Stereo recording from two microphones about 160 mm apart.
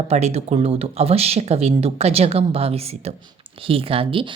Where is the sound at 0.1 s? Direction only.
40° right (ahead or behind).